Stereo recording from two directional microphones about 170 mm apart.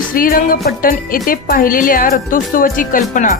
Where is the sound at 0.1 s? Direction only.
55° left (ahead or behind).